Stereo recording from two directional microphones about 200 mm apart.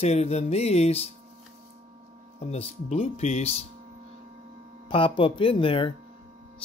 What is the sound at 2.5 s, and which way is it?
Speech, 30° left (ahead or behind).